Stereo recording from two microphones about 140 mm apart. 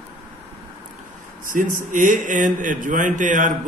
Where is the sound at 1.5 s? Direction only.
65° right (ahead or behind).